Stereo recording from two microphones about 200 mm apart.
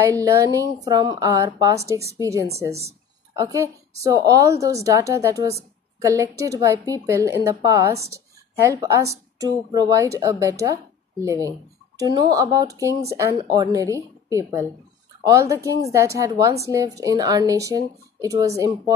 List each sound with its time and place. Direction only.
0.0 s speech: 15° right (ahead or behind)